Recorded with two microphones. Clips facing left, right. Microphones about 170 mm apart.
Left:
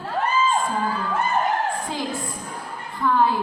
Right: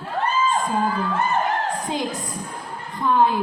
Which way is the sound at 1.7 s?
20° right (ahead or behind).